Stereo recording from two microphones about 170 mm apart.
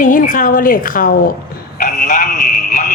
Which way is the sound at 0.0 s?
50° left (ahead or behind).